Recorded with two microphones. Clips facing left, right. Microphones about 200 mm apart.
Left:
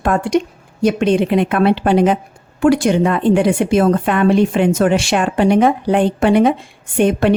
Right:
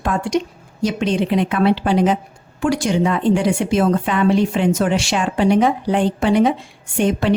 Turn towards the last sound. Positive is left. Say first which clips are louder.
# left 4 dB
turn(degrees=55)  # may be behind; listen again after turning